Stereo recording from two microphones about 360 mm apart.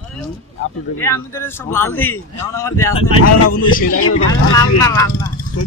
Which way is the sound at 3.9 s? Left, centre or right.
Left.